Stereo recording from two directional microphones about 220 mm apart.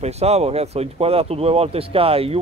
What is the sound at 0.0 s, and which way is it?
Speech, 30° right (ahead or behind).